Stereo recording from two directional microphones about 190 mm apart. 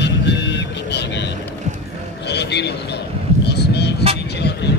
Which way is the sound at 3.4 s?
60° left (ahead or behind).